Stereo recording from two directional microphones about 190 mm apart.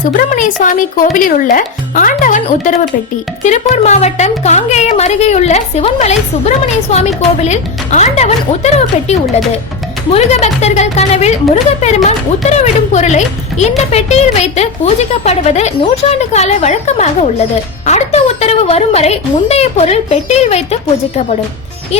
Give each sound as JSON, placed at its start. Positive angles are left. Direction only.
{"t": 0.0, "sound": "a woman's voice", "side_deg": 45}